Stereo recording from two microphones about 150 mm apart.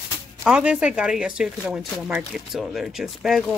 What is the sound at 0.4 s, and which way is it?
Speech, 5° right (ahead or behind).